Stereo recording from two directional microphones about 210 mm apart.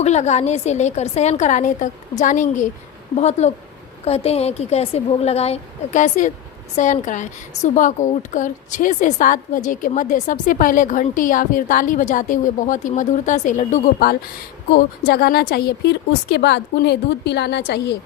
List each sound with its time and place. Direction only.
0.0 s a woman's voice: 30° left (ahead or behind); by 17.9 s 50° left (ahead or behind)